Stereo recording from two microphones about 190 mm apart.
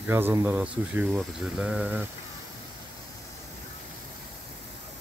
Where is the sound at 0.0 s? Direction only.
10° right (ahead or behind).